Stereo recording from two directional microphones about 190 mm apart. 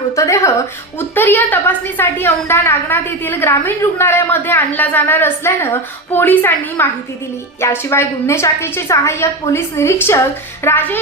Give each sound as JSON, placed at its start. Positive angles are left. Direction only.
{"t": 0.2, "sound": "a woman's voice", "side_deg": 15}